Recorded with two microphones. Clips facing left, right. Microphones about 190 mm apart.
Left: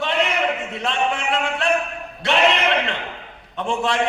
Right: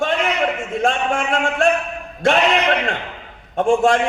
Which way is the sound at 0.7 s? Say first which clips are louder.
Right 4 dB; 45° right (ahead or behind).